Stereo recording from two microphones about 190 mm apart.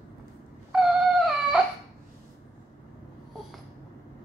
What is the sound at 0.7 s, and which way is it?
Dog, centre (ahead or behind).